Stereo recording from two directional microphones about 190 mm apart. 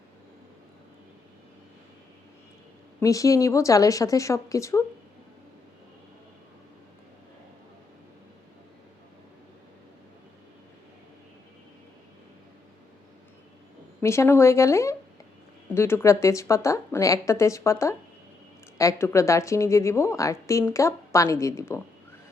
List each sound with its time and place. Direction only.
3.0 s a woman's voice: 15° left (ahead or behind)
14.0 s a woman's voice: 15° left (ahead or behind)